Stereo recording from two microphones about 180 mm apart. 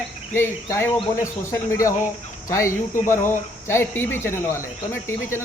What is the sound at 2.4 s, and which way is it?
Speech, 15° left (ahead or behind).